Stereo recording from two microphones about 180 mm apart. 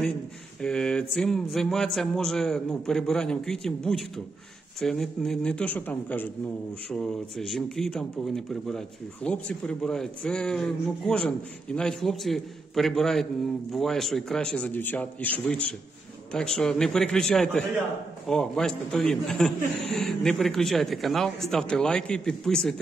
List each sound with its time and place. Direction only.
0.6 s speech: 5° left (ahead or behind)